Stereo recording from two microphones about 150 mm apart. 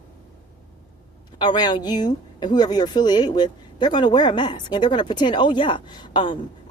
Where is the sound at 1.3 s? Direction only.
30° left (ahead or behind).